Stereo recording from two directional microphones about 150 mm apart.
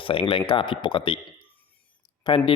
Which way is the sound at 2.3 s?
35° left (ahead or behind).